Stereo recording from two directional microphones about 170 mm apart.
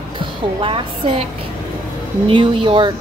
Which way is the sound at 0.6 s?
30° right (ahead or behind).